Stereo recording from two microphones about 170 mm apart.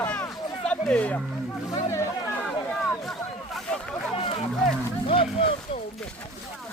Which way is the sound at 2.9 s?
Centre (ahead or behind).